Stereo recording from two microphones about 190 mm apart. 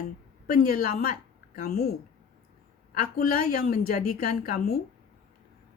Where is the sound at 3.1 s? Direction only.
50° left (ahead or behind).